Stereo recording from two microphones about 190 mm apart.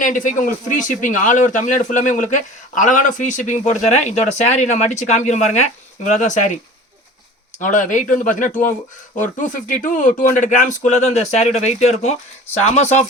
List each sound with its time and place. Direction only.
0.0 s speech: 45° left (ahead or behind)
7.6 s speech: 45° left (ahead or behind)